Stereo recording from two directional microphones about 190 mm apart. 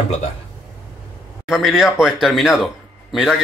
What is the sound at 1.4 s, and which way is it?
Speech, centre (ahead or behind).